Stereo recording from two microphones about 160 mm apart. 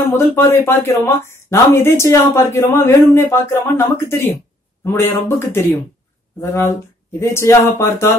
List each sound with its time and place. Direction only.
0.0 s speech: 15° left (ahead or behind)